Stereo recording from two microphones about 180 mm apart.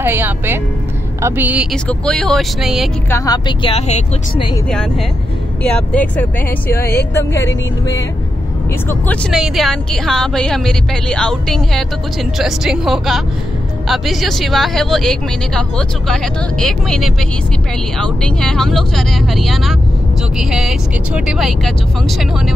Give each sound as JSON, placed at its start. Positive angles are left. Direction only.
{"t": 0.0, "sound": "speech", "side_deg": -10}
{"t": 3.1, "sound": "speech", "side_deg": 20}
{"t": 4.6, "sound": "speech", "side_deg": 5}
{"t": 8.8, "sound": "speech", "side_deg": 10}